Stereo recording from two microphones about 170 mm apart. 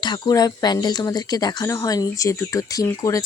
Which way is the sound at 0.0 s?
25° left (ahead or behind).